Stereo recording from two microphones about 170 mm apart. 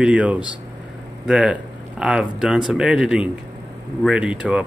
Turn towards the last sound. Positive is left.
turn(degrees=-5)  # may be behind; listen again after turning